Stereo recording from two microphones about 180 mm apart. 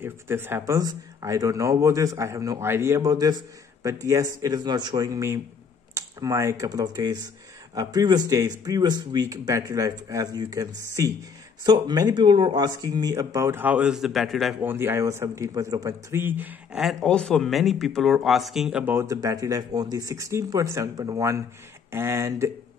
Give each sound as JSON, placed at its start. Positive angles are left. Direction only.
{"t": 0.0, "sound": "speech", "side_deg": -10}